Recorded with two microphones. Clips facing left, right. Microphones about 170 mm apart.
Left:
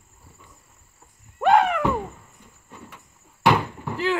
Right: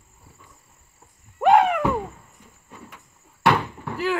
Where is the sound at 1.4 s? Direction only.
10° right (ahead or behind).